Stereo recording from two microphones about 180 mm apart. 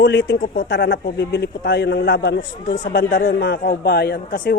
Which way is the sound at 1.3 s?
65° left (ahead or behind).